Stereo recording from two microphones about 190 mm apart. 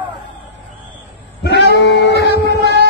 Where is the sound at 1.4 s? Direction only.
65° left (ahead or behind).